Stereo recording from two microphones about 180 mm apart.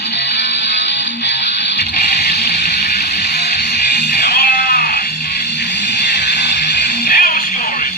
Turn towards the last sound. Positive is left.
turn(degrees=55)  # may be behind; listen again after turning